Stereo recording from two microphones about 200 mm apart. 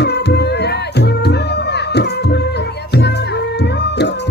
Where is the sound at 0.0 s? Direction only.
55° left (ahead or behind).